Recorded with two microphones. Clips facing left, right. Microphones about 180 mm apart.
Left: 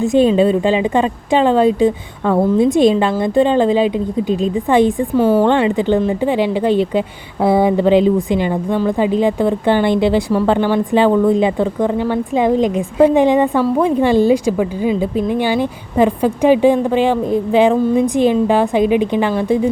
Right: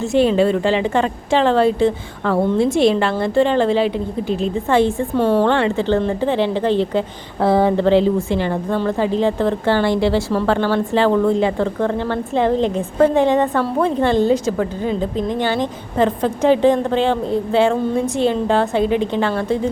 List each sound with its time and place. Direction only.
0.0 s speech: 20° left (ahead or behind)
5.1 s a woman's voice: 5° left (ahead or behind)
5.5 s speech: 15° left (ahead or behind)